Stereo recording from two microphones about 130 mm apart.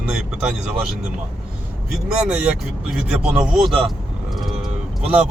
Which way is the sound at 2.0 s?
5° right (ahead or behind).